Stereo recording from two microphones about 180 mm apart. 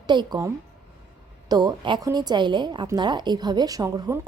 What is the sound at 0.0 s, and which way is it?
A woman's voice, 25° right (ahead or behind).